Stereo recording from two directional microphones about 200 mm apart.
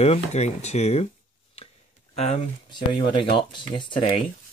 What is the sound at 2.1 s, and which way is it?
Speech, 30° left (ahead or behind).